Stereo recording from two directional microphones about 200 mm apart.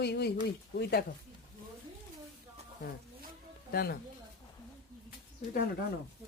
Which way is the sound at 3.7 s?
50° left (ahead or behind).